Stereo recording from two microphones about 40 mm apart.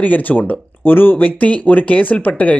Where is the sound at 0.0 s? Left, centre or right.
Left.